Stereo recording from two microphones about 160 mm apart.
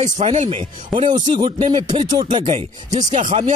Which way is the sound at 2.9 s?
50° right (ahead or behind).